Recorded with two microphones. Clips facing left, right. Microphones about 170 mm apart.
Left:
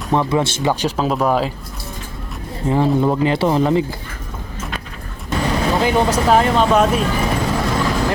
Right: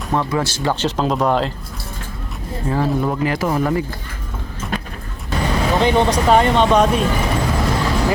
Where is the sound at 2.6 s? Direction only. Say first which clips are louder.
Left 4 dB; 20° left (ahead or behind).